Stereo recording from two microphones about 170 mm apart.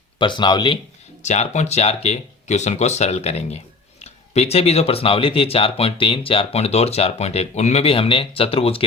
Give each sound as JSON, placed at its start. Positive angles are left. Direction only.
{"t": 0.2, "sound": "speech", "side_deg": 25}
{"t": 1.2, "sound": "speech", "side_deg": 45}